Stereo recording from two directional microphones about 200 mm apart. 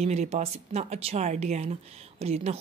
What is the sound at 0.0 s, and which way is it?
Speech, 35° right (ahead or behind).